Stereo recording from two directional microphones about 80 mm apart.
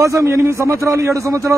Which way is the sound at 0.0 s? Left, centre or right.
Right.